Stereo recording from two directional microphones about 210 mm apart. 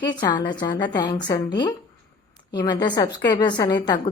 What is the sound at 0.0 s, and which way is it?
A woman's voice, 20° left (ahead or behind).